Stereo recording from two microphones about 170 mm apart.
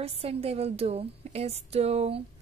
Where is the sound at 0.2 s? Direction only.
35° right (ahead or behind).